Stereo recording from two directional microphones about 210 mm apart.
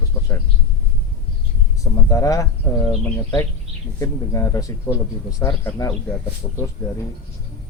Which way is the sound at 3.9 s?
15° left (ahead or behind).